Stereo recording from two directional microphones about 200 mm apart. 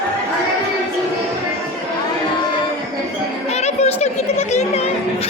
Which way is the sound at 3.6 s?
35° left (ahead or behind).